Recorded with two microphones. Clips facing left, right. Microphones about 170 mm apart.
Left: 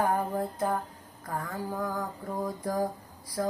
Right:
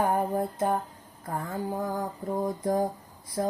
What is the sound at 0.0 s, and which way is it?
Music, 25° right (ahead or behind).